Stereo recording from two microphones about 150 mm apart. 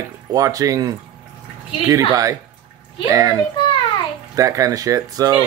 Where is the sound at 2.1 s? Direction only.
20° right (ahead or behind).